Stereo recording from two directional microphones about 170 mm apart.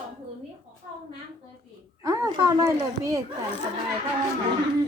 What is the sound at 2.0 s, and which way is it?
A child's voice, 15° right (ahead or behind).